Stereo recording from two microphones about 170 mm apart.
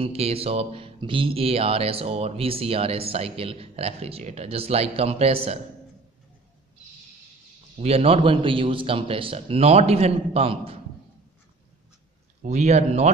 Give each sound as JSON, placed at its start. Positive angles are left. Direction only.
{"t": 0.0, "sound": "speech", "side_deg": -35}
{"t": 7.8, "sound": "speech", "side_deg": -35}
{"t": 12.4, "sound": "speech", "side_deg": -40}